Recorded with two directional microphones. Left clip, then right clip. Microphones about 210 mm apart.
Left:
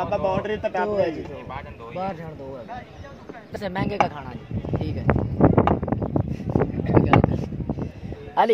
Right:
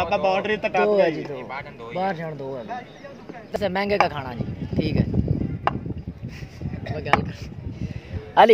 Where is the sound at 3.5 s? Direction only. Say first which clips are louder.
Right 3 dB; 40° right (ahead or behind).